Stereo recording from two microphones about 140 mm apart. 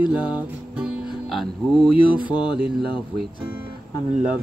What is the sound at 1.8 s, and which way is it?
Mantra, 35° left (ahead or behind).